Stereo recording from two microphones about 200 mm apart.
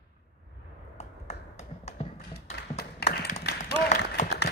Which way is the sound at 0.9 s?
35° left (ahead or behind).